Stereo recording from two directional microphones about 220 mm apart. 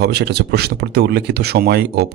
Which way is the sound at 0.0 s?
50° right (ahead or behind).